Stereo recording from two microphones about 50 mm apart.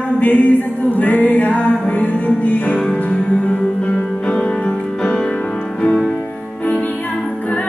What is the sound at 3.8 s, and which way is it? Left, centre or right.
Music, left.